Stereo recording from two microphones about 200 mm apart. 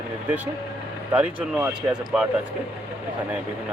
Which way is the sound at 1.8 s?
15° right (ahead or behind).